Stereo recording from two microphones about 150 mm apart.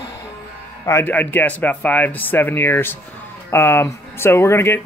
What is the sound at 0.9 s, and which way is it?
Speech, 15° left (ahead or behind).